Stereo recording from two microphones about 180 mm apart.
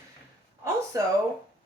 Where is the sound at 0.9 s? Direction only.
20° right (ahead or behind).